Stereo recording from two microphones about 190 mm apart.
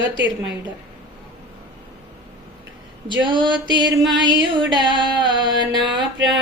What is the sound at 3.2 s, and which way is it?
Music, 25° right (ahead or behind).